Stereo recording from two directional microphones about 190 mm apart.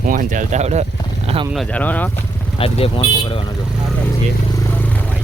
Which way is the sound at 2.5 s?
30° left (ahead or behind).